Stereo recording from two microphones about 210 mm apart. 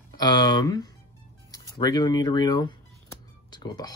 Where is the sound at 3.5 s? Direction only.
20° left (ahead or behind).